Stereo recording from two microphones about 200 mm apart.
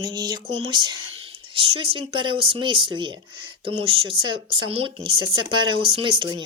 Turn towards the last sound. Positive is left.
turn(degrees=-25)  # may be behind; listen again after turning